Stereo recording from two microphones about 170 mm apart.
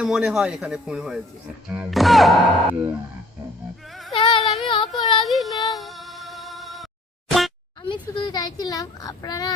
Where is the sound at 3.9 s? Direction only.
Centre (ahead or behind).